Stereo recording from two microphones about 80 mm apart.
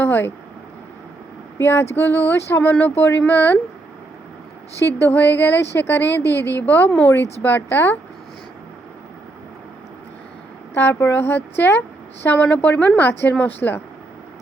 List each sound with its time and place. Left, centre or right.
0.0 s speech: left
1.5 s speech: left
5.0 s speech: left
10.8 s speech: left